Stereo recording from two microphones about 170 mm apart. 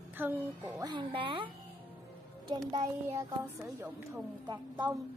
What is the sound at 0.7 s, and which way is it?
Speech, 25° right (ahead or behind).